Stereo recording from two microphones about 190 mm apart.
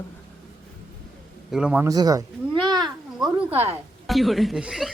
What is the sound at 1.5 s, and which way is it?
Speech, 5° right (ahead or behind).